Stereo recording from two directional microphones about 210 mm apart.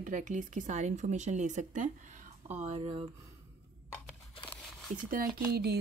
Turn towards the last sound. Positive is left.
turn(degrees=-50)  # may be behind; listen again after turning